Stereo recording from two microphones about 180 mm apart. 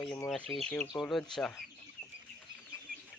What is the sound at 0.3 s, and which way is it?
Speech, 5° left (ahead or behind).